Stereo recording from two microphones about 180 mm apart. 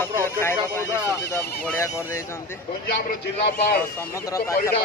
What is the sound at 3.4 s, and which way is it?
Speech, 60° left (ahead or behind).